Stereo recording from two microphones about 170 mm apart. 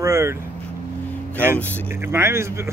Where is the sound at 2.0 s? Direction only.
15° right (ahead or behind).